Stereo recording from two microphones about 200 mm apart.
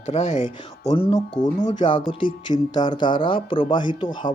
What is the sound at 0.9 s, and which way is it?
Speech, 25° left (ahead or behind).